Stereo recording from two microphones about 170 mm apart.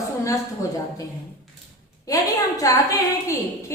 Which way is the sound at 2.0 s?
20° left (ahead or behind).